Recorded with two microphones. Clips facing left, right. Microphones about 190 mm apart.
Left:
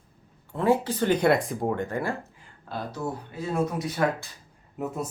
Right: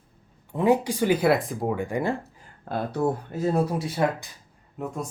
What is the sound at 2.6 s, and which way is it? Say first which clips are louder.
Speech: right 7 dB; 55° right (ahead or behind).